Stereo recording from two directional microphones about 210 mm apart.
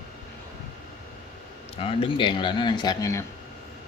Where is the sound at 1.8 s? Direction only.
25° left (ahead or behind).